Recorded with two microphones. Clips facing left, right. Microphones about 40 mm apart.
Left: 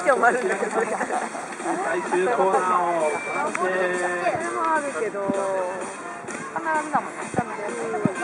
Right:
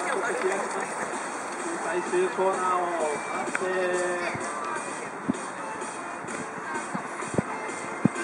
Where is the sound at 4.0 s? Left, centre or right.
Left.